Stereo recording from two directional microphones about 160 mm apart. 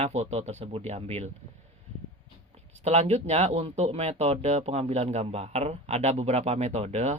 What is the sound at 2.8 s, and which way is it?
Speech, 40° right (ahead or behind).